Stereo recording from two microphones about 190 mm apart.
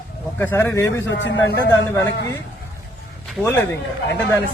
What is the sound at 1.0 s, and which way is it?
Speech, 70° left (ahead or behind).